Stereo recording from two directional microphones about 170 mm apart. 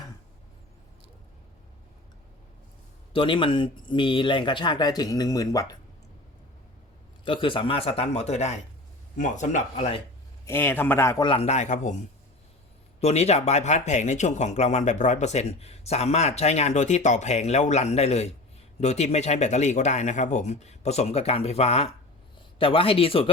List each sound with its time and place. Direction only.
3.1 s speech: 30° left (ahead or behind)
7.3 s speech: 30° left (ahead or behind)
10.4 s a man's voice: 15° left (ahead or behind)
11.2 s speech: 30° left (ahead or behind)
13.0 s speech: 40° left (ahead or behind)